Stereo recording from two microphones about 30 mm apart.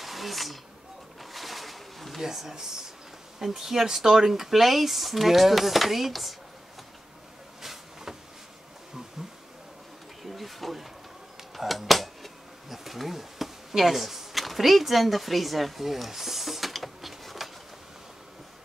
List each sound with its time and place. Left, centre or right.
0.0 s speech: centre
1.3 s a sound: centre
2.2 s speech: centre
7.6 s vehicle: centre
10.2 s bee: centre
11.5 s a sound: centre